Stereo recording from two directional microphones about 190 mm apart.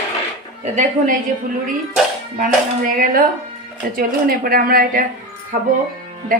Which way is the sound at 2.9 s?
50° right (ahead or behind).